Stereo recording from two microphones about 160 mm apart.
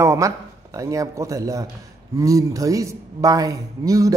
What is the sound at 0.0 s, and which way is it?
Speech, 20° right (ahead or behind).